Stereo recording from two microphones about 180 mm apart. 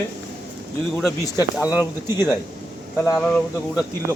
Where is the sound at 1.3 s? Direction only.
20° left (ahead or behind).